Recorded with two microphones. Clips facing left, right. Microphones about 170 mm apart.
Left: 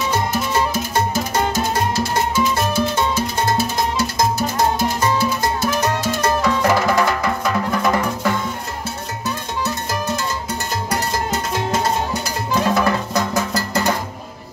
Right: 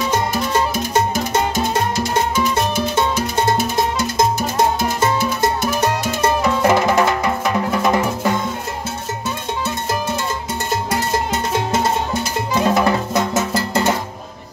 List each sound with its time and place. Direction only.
1.1 s salsa music: 20° right (ahead or behind)
5.0 s music: 20° right (ahead or behind)
12.6 s music: 20° right (ahead or behind)